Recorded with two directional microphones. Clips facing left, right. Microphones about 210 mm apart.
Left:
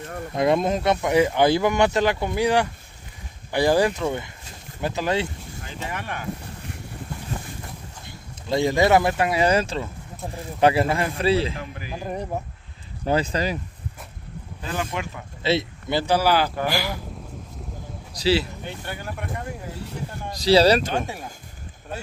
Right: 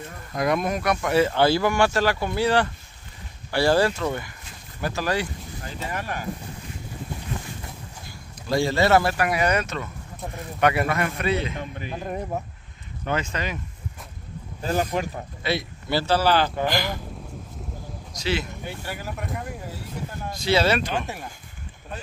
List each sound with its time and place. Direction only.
0.3 s speech: 25° left (ahead or behind)
5.9 s speech: 40° right (ahead or behind)
8.5 s speech: 20° left (ahead or behind)
11.9 s speech: centre (ahead or behind)
13.0 s speech: 35° left (ahead or behind)
14.6 s speech: 35° right (ahead or behind)
15.4 s speech: 20° left (ahead or behind)
18.1 s speech: 35° left (ahead or behind)
18.6 s speech: 5° right (ahead or behind)
20.3 s speech: 35° left (ahead or behind)